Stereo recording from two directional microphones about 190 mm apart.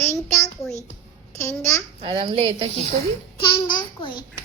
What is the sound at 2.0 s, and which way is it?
Speech, 30° right (ahead or behind).